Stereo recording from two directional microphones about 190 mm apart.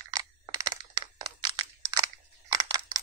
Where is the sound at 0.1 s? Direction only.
20° right (ahead or behind).